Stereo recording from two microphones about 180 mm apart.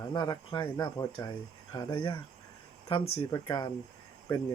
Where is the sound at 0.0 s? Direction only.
20° left (ahead or behind).